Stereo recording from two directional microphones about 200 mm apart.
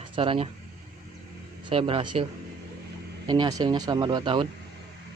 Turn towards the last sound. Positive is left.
turn(degrees=-25)  # may be behind; listen again after turning